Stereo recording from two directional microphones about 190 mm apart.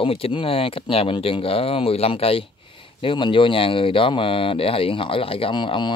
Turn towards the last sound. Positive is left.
turn(degrees=25)  # may be behind; listen again after turning